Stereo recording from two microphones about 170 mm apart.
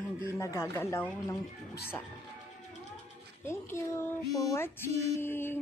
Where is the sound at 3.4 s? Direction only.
15° left (ahead or behind).